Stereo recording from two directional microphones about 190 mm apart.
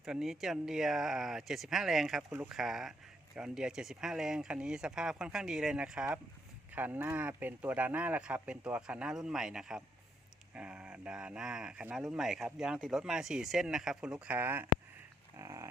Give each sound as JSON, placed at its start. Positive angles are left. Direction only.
{"t": 0.0, "sound": "speech", "side_deg": 0}